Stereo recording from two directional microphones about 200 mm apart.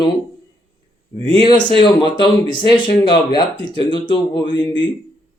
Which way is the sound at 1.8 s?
25° left (ahead or behind).